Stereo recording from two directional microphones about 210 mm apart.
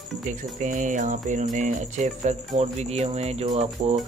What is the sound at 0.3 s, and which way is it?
Speech, 35° right (ahead or behind).